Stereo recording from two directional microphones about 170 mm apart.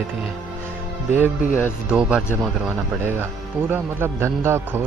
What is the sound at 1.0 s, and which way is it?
Speech, 10° right (ahead or behind).